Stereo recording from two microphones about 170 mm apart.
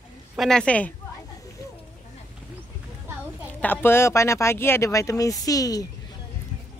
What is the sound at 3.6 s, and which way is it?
Speech, 10° left (ahead or behind).